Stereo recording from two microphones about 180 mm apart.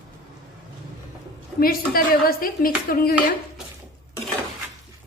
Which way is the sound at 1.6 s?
55° left (ahead or behind).